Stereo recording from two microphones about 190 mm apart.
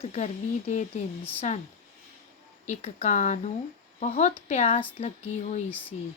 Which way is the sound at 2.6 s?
35° left (ahead or behind).